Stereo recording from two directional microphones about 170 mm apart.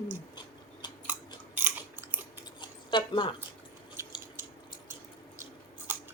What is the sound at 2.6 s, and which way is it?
Zipper, 30° left (ahead or behind).